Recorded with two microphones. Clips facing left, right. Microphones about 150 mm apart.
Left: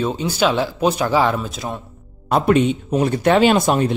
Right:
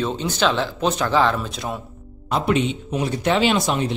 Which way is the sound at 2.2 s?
50° left (ahead or behind).